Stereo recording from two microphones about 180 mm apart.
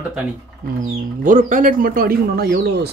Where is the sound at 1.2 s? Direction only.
45° right (ahead or behind); by 2.9 s 65° right (ahead or behind).